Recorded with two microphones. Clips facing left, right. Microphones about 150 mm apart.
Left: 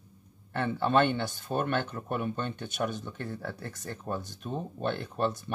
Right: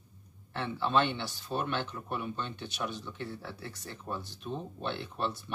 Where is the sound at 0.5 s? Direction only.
50° left (ahead or behind).